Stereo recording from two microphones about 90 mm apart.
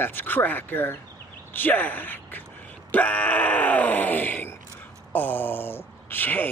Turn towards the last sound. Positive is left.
turn(degrees=20)  # may be behind; listen again after turning